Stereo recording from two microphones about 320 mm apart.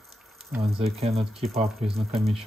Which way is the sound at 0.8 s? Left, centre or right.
Centre.